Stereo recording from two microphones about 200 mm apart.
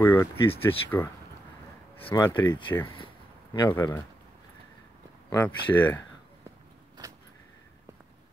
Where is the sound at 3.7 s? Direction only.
10° left (ahead or behind).